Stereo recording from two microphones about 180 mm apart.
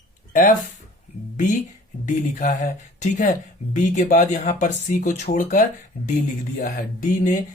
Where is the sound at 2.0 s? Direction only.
45° left (ahead or behind).